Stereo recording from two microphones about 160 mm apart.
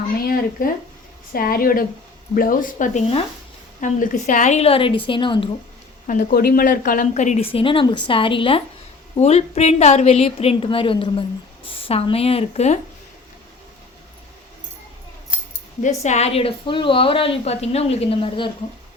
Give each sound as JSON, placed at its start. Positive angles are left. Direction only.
{"t": 0.2, "sound": "a woman's voice", "side_deg": 65}
{"t": 6.1, "sound": "a woman's voice", "side_deg": 60}
{"t": 15.8, "sound": "a woman's voice", "side_deg": 45}